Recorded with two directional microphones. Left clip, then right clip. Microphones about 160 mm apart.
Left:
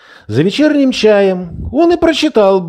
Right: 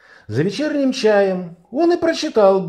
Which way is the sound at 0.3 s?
35° left (ahead or behind).